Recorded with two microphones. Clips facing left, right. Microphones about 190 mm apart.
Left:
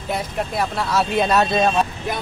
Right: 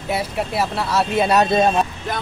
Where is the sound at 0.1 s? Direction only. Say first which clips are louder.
Right 2 dB; 10° right (ahead or behind).